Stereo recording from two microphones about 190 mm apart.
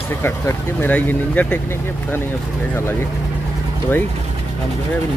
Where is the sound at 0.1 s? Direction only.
15° left (ahead or behind).